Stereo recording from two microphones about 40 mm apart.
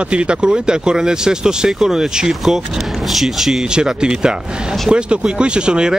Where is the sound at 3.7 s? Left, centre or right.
Right.